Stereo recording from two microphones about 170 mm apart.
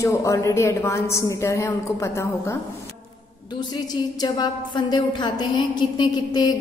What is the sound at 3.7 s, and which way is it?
A woman's voice, 25° left (ahead or behind).